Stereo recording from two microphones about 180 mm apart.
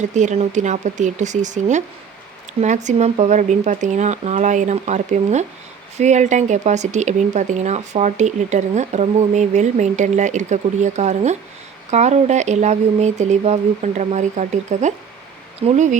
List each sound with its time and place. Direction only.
0.0 s speech: 40° right (ahead or behind)